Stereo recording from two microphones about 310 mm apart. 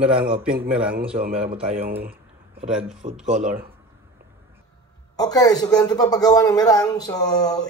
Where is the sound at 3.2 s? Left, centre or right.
Right.